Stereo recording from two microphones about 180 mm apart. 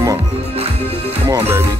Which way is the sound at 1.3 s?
15° right (ahead or behind).